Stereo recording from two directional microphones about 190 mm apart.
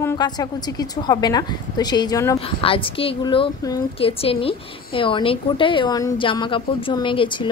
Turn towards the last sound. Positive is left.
turn(degrees=25)  # may be behind; listen again after turning